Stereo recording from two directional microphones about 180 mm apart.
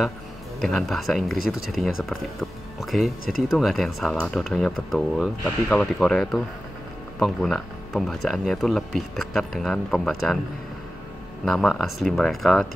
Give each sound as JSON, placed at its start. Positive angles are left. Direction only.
{"t": 0.6, "sound": "speech", "side_deg": 5}
{"t": 11.4, "sound": "speech", "side_deg": 0}